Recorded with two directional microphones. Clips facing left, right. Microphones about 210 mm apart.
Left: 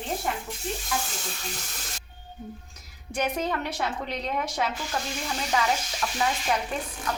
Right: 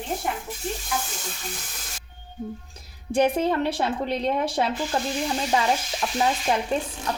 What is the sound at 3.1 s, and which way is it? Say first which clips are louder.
A woman's voice: right 7 dB; 30° right (ahead or behind).